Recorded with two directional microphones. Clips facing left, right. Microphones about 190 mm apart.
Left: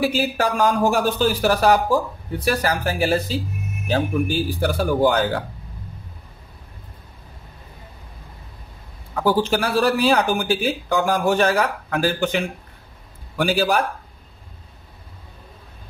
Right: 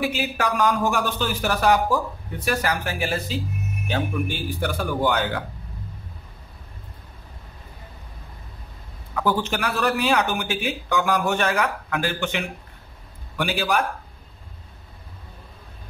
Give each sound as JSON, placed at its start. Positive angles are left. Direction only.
{"t": 0.0, "sound": "speech", "side_deg": 35}
{"t": 9.2, "sound": "speech", "side_deg": 35}